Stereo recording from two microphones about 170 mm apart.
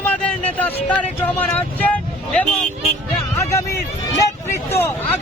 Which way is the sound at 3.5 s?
15° left (ahead or behind).